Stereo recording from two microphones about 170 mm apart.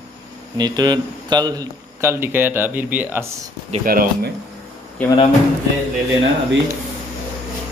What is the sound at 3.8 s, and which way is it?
Speech, 55° right (ahead or behind).